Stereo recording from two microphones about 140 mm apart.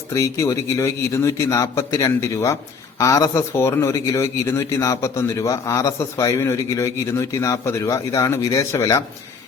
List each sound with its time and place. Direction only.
0.1 s a man's voice: 20° left (ahead or behind)